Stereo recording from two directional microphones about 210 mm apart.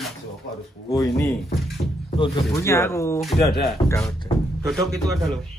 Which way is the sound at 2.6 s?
15° left (ahead or behind).